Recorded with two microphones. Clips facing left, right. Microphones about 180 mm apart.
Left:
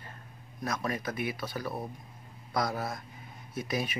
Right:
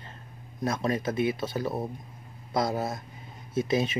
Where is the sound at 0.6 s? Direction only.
25° right (ahead or behind).